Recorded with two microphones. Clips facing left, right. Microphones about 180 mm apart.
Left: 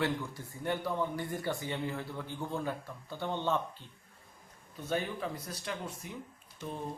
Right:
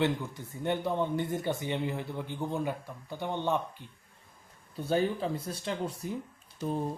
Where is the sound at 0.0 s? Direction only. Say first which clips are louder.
Right 4 dB; 20° right (ahead or behind).